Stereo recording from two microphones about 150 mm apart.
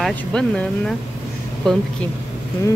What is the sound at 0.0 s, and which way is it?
Speech, 5° left (ahead or behind).